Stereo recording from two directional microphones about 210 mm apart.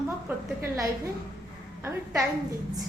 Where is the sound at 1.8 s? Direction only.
10° right (ahead or behind).